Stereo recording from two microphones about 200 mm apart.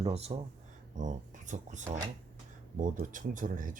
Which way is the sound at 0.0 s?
30° right (ahead or behind).